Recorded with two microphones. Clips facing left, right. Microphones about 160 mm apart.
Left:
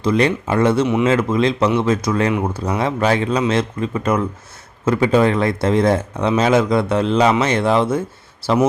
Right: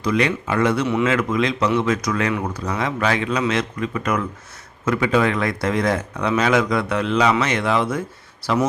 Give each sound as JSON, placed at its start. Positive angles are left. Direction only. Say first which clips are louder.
{"t": 0.0, "sound": "speech", "louder": "left 4 dB", "side_deg": 30}